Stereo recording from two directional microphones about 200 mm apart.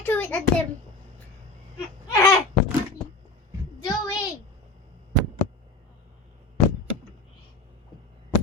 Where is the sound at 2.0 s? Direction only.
15° left (ahead or behind).